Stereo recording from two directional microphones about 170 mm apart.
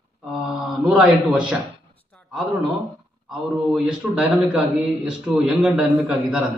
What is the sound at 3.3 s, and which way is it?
A man's voice, 5° right (ahead or behind).